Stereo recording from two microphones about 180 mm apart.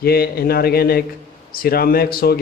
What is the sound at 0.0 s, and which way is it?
A man's voice, 60° left (ahead or behind).